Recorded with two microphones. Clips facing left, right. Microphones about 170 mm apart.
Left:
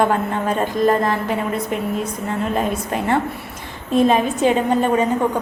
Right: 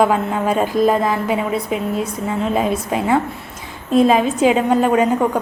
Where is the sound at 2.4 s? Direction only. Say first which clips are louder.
Right 3 dB; 5° right (ahead or behind).